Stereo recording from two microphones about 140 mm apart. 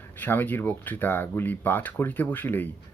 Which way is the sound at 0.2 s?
15° left (ahead or behind).